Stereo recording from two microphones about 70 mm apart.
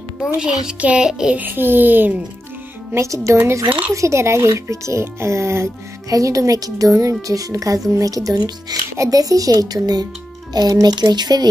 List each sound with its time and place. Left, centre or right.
0.4 s speech: centre
1.3 s speech: right
2.9 s speech: right
3.6 s speech: centre
3.9 s speech: right
6.0 s speech: right
8.9 s speech: right